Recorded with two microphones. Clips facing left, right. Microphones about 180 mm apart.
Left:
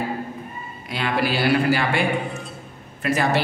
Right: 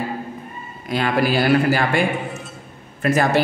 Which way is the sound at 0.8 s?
45° right (ahead or behind).